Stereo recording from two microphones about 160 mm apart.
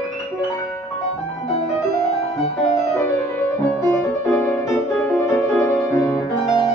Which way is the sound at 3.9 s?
10° left (ahead or behind).